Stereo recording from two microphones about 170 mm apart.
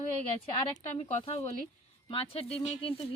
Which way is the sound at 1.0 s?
35° left (ahead or behind).